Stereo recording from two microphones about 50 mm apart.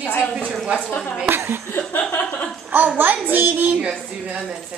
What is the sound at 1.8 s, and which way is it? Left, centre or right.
Chuckle, left.